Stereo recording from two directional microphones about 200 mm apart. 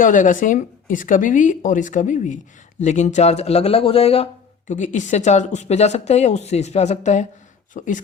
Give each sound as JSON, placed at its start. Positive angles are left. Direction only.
{"t": 0.0, "sound": "speech", "side_deg": 40}